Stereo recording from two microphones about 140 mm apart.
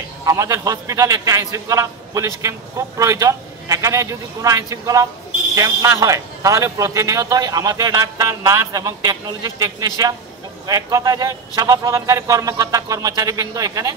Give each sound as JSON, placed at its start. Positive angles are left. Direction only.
{"t": 0.2, "sound": "a man's voice", "side_deg": -25}